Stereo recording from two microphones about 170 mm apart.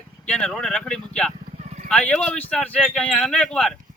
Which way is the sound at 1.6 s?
45° right (ahead or behind).